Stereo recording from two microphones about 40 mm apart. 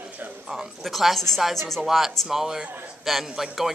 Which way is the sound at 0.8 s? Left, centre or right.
Centre.